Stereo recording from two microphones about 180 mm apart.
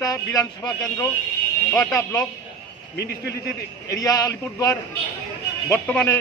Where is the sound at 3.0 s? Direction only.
65° left (ahead or behind).